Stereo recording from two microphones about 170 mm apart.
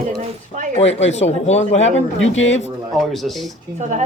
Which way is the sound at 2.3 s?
90° left.